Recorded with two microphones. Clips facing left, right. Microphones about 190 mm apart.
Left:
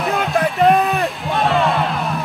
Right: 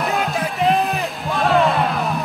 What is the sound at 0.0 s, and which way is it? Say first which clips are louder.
Music: left 3 dB; centre (ahead or behind).